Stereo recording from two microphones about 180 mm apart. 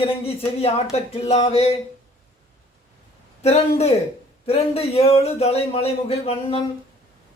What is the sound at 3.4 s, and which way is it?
A man's voice, 35° left (ahead or behind).